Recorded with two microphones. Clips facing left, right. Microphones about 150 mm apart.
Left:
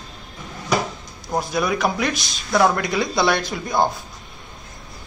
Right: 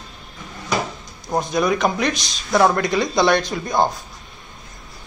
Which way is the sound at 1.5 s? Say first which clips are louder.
Right 3 dB; 5° left (ahead or behind).